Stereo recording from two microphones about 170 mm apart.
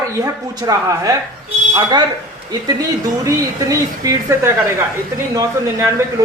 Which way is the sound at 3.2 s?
20° right (ahead or behind).